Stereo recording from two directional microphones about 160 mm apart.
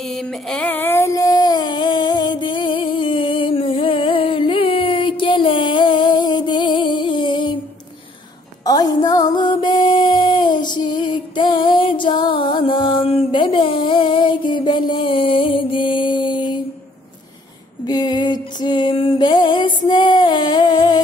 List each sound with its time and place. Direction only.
0.0 s a sound: 5° left (ahead or behind); by 7.5 s 30° left (ahead or behind)
8.6 s music: 25° left (ahead or behind)
17.8 s music: 25° left (ahead or behind)